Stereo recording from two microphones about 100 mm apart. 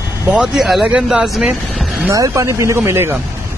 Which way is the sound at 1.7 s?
Centre (ahead or behind).